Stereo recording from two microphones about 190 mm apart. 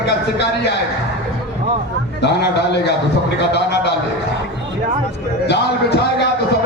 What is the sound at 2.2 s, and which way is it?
Speech, 60° left (ahead or behind).